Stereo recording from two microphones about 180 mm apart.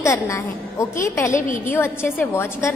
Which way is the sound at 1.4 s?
45° left (ahead or behind).